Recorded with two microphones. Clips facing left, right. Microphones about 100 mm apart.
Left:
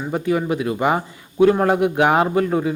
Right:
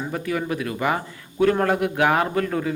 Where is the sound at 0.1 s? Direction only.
25° left (ahead or behind).